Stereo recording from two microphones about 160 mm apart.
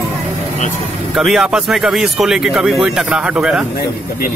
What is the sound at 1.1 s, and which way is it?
Speech, centre (ahead or behind).